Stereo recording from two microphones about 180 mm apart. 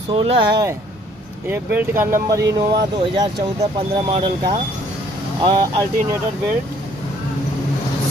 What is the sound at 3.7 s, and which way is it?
Speech, 25° right (ahead or behind).